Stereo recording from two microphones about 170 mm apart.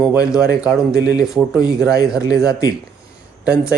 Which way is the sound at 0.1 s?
5° right (ahead or behind).